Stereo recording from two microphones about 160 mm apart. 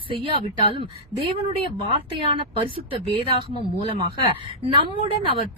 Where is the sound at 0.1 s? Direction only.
30° right (ahead or behind).